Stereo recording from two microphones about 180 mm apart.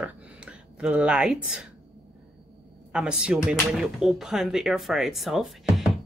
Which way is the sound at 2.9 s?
5° right (ahead or behind).